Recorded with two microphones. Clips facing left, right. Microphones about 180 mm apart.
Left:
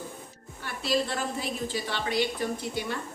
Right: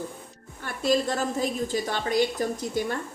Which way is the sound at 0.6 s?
45° right (ahead or behind).